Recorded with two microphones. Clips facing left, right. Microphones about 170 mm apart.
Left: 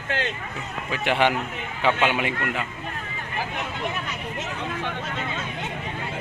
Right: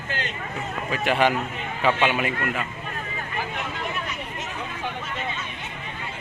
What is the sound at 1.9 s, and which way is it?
Speech, centre (ahead or behind).